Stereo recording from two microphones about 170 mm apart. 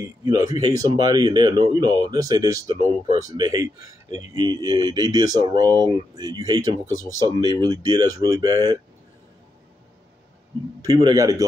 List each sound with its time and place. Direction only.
0.0 s speech: 20° right (ahead or behind)
10.8 s speech: 25° right (ahead or behind)